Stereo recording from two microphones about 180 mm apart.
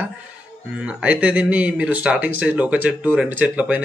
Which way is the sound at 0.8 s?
5° right (ahead or behind).